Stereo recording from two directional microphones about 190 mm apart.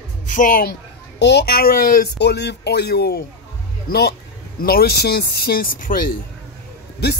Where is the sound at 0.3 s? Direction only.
45° left (ahead or behind).